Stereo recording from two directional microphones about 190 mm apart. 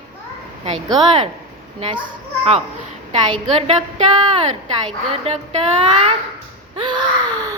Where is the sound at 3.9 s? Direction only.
35° right (ahead or behind).